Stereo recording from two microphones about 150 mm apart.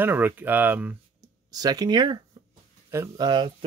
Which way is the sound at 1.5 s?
25° right (ahead or behind).